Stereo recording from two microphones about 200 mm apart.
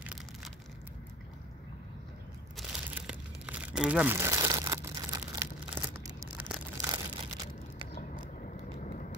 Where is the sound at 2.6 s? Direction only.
5° right (ahead or behind).